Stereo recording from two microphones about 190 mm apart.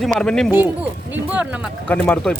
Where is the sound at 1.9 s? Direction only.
5° left (ahead or behind).